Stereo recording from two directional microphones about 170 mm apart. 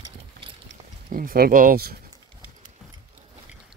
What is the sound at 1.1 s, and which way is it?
Speech, 55° right (ahead or behind).